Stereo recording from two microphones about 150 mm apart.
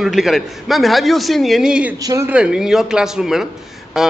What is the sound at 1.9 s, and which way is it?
Speech, 20° right (ahead or behind).